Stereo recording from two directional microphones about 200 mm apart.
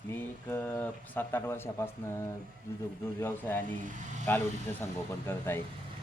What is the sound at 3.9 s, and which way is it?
Speech, 40° right (ahead or behind).